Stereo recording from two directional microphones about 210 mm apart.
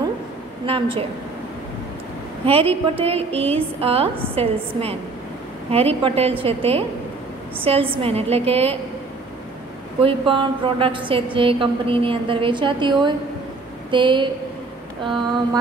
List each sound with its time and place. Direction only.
0.7 s a woman's voice: 25° right (ahead or behind)
2.4 s a woman's voice: 25° right (ahead or behind)
10.0 s a woman's voice: 25° right (ahead or behind)